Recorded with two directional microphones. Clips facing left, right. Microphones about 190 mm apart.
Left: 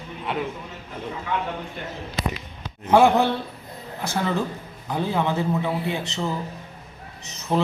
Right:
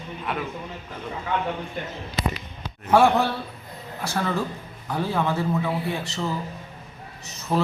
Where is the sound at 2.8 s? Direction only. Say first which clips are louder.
Left 2 dB; 20° left (ahead or behind).